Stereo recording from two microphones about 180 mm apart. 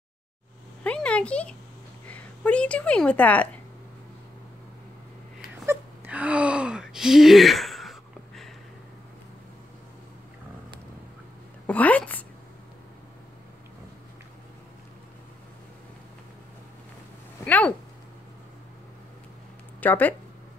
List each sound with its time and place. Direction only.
0.8 s a sound: 5° left (ahead or behind)
2.0 s a woman's voice: 10° left (ahead or behind)
5.7 s wail: 10° right (ahead or behind)
11.6 s a woman's voice: 10° left (ahead or behind)
17.5 s speech: 10° left (ahead or behind)
19.8 s speech: 10° left (ahead or behind)